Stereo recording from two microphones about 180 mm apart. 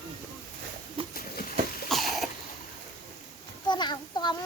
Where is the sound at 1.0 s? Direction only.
30° right (ahead or behind).